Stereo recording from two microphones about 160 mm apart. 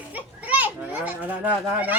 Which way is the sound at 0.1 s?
10° right (ahead or behind).